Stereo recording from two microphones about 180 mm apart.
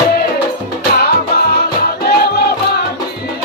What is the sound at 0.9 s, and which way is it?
Music, 60° left (ahead or behind).